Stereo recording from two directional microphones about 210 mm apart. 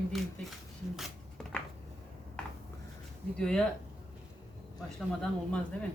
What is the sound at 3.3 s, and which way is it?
Speech, 5° left (ahead or behind).